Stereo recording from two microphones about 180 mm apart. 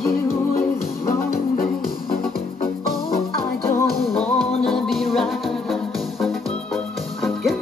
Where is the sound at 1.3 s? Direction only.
55° left (ahead or behind).